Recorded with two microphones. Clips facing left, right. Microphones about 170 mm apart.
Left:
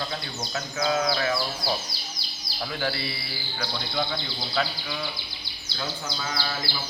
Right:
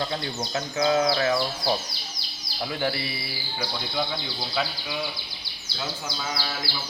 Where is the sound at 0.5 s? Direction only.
25° right (ahead or behind).